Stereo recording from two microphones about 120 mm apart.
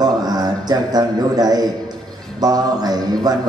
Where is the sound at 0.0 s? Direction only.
35° right (ahead or behind).